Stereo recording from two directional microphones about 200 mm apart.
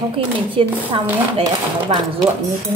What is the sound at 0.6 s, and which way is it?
Speech, 25° right (ahead or behind).